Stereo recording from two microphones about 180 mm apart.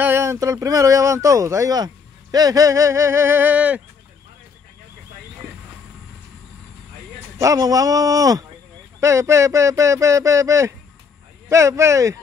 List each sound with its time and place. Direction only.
0.0 s speech: 15° right (ahead or behind)
7.3 s speech: 20° right (ahead or behind)